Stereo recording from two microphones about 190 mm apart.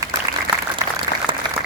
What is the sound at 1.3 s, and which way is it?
Applause, 30° right (ahead or behind).